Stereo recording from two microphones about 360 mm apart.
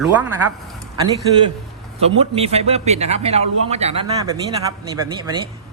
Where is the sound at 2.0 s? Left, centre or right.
Centre.